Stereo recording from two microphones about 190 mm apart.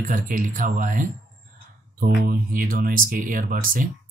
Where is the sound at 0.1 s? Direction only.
45° right (ahead or behind).